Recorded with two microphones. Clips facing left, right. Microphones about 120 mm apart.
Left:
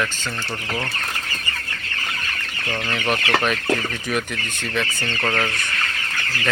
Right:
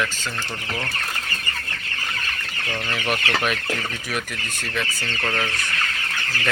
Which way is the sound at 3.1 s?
5° right (ahead or behind).